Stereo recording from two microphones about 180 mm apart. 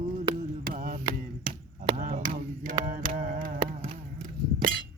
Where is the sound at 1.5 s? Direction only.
50° right (ahead or behind).